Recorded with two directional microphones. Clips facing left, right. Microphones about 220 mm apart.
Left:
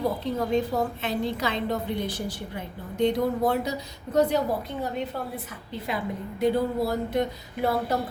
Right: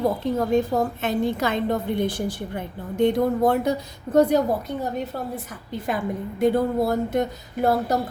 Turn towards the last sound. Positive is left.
turn(degrees=-45)  # may be behind; listen again after turning